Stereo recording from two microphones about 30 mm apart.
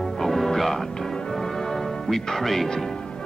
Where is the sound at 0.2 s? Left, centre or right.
Centre.